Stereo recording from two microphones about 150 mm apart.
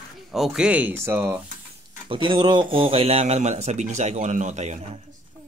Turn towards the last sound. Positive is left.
turn(degrees=-50)  # may be behind; listen again after turning